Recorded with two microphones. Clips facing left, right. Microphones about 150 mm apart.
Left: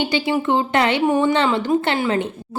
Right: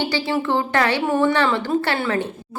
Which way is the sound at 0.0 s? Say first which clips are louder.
Left 2 dB; 20° left (ahead or behind).